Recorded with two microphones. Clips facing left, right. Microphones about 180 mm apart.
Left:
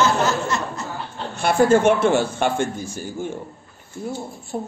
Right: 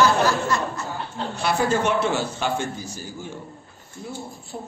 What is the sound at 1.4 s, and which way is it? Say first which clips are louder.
A man's voice: left 7 dB; 50° left (ahead or behind).